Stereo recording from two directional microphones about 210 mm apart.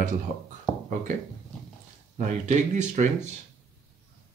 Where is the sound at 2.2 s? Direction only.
35° right (ahead or behind).